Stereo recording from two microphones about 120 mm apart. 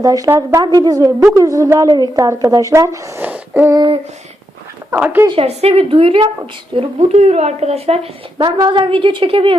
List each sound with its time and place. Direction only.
0.0 s a woman's voice: 30° right (ahead or behind)
0.6 s a woman's voice: 35° right (ahead or behind)
3.2 s a sound: 15° right (ahead or behind)
4.9 s speech: 15° right (ahead or behind)
5.3 s a woman's voice: 55° right (ahead or behind)
6.7 s a woman's voice: 65° right (ahead or behind); by 9.6 s 45° right (ahead or behind)